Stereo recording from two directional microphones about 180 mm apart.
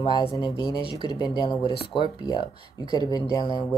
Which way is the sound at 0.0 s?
30° left (ahead or behind).